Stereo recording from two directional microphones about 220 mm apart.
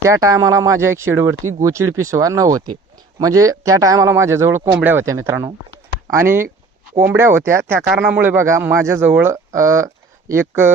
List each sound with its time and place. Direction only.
0.0 s speech: 15° right (ahead or behind)